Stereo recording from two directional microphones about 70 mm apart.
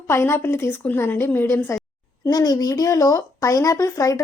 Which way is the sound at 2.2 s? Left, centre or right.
Left.